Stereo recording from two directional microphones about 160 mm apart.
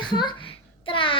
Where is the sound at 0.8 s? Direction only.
35° left (ahead or behind).